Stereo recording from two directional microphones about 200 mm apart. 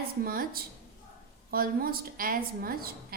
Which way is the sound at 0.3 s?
45° right (ahead or behind).